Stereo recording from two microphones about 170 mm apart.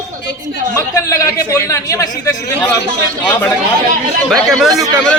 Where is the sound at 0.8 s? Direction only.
20° left (ahead or behind).